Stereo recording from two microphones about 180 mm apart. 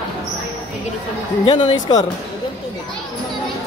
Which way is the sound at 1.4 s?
25° left (ahead or behind).